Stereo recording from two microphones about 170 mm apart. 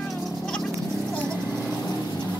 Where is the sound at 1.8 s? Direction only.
25° left (ahead or behind).